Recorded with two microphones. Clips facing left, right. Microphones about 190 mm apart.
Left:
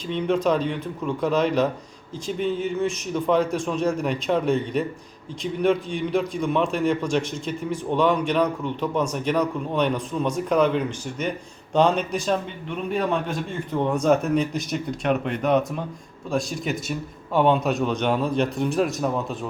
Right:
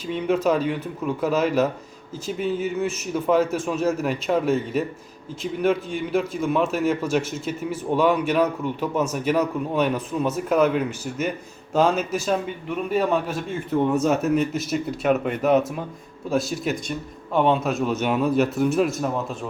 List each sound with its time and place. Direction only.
0.1 s a man's voice: 5° right (ahead or behind)